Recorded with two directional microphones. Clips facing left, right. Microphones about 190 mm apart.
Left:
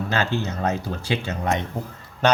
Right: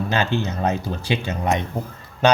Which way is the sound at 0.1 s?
15° right (ahead or behind).